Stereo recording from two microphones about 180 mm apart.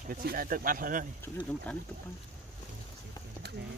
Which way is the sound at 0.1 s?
55° right (ahead or behind).